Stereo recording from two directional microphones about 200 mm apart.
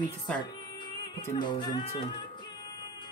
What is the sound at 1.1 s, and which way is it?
Music, 20° left (ahead or behind).